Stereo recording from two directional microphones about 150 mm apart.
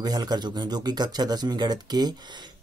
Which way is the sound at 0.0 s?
25° right (ahead or behind).